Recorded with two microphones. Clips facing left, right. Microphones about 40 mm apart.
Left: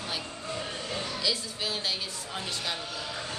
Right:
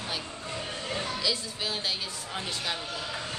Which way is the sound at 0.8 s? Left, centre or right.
Right.